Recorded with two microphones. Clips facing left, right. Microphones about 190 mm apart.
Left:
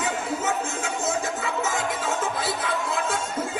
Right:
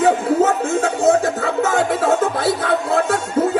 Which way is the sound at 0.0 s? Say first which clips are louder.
Right 12 dB; 60° right (ahead or behind).